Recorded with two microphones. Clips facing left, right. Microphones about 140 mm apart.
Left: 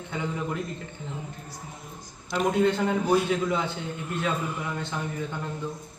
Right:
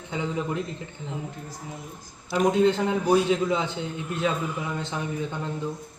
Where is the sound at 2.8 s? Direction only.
20° right (ahead or behind).